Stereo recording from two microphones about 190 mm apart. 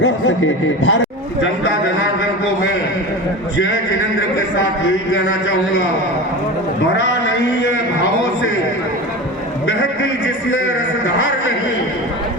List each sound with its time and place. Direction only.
0.0 s speech: 90° left